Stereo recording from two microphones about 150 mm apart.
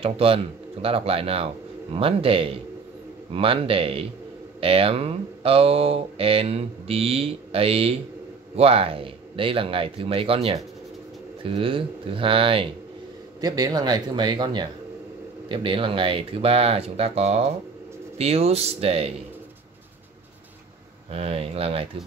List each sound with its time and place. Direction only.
0.0 s speech: 40° right (ahead or behind)
13.4 s speech: 25° right (ahead or behind); by 19.1 s 45° right (ahead or behind)
21.1 s speech: 40° right (ahead or behind)